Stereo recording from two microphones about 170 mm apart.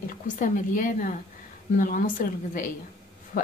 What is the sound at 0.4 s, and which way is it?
A woman's voice, 50° left (ahead or behind).